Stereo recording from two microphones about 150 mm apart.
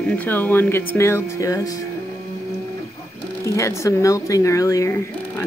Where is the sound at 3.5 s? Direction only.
20° left (ahead or behind).